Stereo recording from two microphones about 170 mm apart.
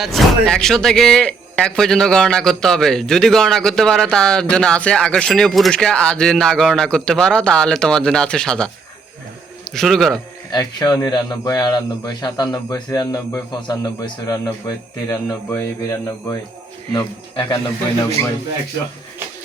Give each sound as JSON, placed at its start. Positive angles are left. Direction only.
{"t": 0.0, "sound": "a man's voice", "side_deg": 0}
{"t": 9.7, "sound": "a man's voice", "side_deg": 0}
{"t": 10.5, "sound": "a man's voice", "side_deg": 25}